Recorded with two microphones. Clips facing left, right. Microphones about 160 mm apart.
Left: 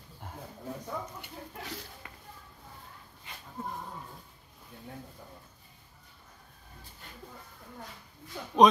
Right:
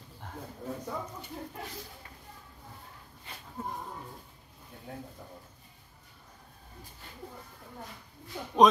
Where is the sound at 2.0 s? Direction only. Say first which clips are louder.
Left 2 dB; 90° left.